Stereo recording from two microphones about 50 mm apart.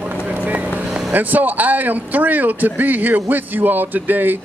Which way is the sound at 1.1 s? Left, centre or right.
Right.